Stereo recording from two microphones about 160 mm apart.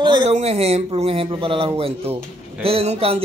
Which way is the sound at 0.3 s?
40° right (ahead or behind).